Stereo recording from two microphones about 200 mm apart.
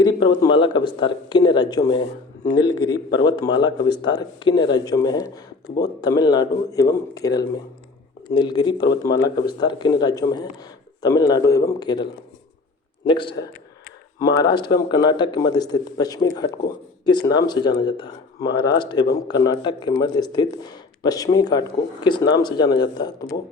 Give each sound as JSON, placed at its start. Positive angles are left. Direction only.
{"t": 0.2, "sound": "a man's voice", "side_deg": 20}
{"t": 13.1, "sound": "speech", "side_deg": 25}